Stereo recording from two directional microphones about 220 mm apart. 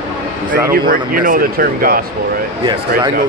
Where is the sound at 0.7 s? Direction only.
40° right (ahead or behind).